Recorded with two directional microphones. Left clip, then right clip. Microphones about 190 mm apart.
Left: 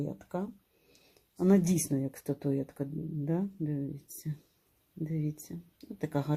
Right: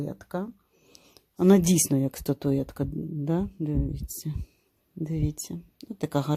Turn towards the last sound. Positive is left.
turn(degrees=-30)  # may be behind; listen again after turning